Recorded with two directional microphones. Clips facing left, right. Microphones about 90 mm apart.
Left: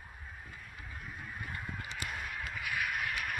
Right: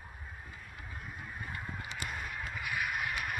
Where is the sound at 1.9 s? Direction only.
Centre (ahead or behind).